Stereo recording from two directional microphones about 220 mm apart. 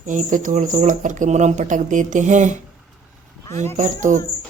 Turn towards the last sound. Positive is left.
turn(degrees=-35)  # may be behind; listen again after turning